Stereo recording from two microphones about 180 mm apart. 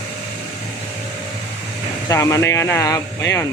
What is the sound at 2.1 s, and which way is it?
Speech, 15° left (ahead or behind).